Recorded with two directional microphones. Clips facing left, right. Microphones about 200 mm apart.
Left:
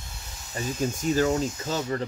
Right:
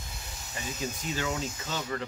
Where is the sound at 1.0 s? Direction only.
40° left (ahead or behind).